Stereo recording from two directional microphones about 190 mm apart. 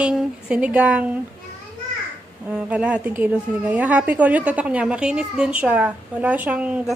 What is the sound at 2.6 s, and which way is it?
A woman's voice, 5° right (ahead or behind).